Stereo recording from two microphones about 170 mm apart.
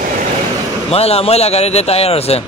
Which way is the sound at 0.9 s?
35° left (ahead or behind).